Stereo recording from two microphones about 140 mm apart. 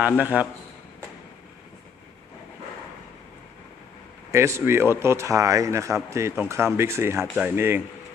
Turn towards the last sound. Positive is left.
turn(degrees=-15)  # may be behind; listen again after turning